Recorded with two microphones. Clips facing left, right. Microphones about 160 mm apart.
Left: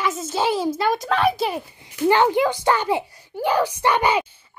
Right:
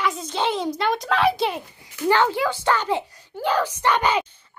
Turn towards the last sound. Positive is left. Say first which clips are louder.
# left 2 dB
turn(degrees=10)  # may be behind; listen again after turning